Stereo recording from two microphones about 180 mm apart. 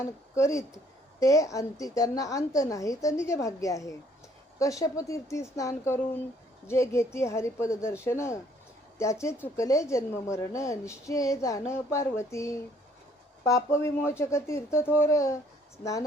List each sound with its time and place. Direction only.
0.0 s speech: 15° left (ahead or behind)